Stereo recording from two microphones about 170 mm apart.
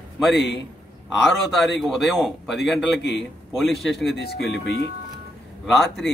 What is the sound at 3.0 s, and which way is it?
Speech, 90° left.